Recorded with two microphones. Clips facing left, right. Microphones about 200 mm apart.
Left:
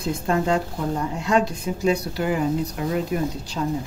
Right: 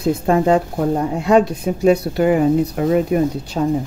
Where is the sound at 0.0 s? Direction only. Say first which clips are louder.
Right 7 dB; 60° right (ahead or behind).